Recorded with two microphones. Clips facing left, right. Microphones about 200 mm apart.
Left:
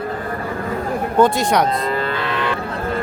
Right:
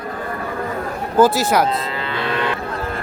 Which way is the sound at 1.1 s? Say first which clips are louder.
Right 1 dB; 5° right (ahead or behind).